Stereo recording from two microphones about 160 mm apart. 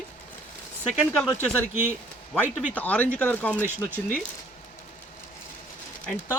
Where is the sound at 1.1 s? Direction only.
10° left (ahead or behind).